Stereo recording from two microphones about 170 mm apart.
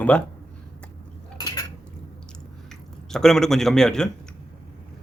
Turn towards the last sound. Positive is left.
turn(degrees=5)  # may be behind; listen again after turning